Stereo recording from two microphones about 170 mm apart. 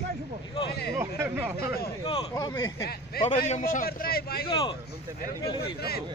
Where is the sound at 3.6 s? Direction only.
55° left (ahead or behind).